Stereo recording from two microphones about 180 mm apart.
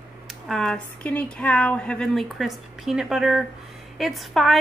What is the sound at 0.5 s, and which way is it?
A woman's voice, 5° left (ahead or behind).